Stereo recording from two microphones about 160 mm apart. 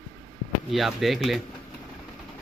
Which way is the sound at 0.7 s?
Centre (ahead or behind).